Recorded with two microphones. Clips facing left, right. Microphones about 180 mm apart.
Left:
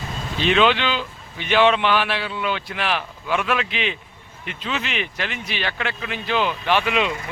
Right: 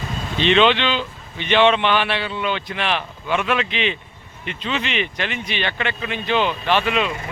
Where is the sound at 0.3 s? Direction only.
5° left (ahead or behind).